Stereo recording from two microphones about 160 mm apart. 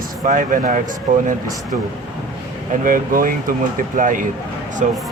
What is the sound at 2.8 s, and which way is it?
Speech, 60° right (ahead or behind).